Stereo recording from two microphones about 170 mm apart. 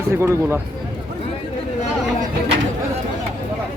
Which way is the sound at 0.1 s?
15° right (ahead or behind).